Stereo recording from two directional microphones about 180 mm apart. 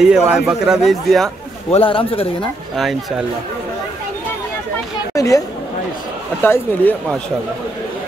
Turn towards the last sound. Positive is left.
turn(degrees=10)  # may be behind; listen again after turning